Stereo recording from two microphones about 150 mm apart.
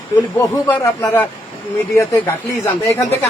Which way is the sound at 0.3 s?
20° left (ahead or behind).